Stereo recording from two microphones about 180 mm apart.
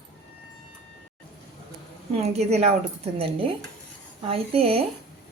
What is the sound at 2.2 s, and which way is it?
Speech, 35° right (ahead or behind).